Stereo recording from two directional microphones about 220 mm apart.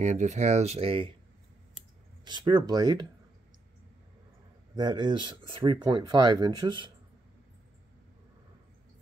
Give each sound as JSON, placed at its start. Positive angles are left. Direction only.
{"t": 0.0, "sound": "speech", "side_deg": -30}
{"t": 2.2, "sound": "speech", "side_deg": -20}
{"t": 4.7, "sound": "speech", "side_deg": -20}